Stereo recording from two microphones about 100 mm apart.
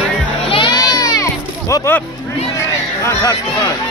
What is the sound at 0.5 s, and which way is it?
Music, 55° left (ahead or behind).